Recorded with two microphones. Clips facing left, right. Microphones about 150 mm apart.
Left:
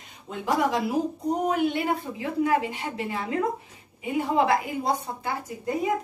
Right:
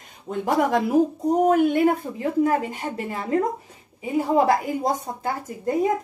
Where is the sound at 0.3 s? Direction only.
50° right (ahead or behind).